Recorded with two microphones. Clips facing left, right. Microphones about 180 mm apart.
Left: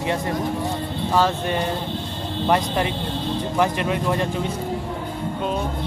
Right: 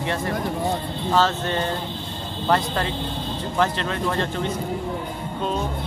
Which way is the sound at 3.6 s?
15° left (ahead or behind).